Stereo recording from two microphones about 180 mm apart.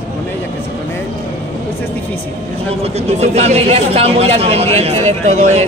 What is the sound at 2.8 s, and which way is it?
Speech, 35° right (ahead or behind).